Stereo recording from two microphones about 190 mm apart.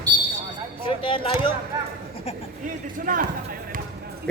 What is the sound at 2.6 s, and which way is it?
Speech, 45° right (ahead or behind).